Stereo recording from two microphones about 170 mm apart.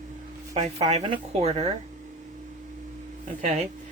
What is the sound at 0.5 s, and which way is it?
Speech, 40° right (ahead or behind).